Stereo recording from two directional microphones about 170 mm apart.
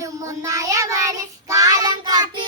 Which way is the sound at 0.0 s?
20° right (ahead or behind).